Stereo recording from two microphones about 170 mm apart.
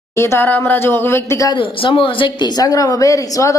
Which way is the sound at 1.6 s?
30° left (ahead or behind).